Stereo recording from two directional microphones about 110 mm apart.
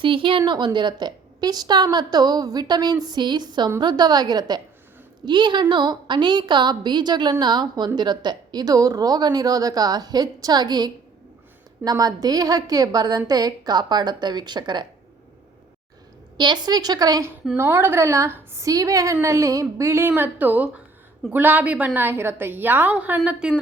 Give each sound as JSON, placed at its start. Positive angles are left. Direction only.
{"t": 0.0, "sound": "a woman's voice", "side_deg": -50}
{"t": 16.4, "sound": "a woman's voice", "side_deg": -40}